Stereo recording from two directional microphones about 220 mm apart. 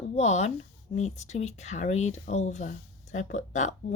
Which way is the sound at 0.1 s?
30° left (ahead or behind).